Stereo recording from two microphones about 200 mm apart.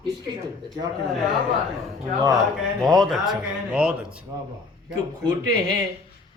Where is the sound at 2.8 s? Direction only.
Centre (ahead or behind).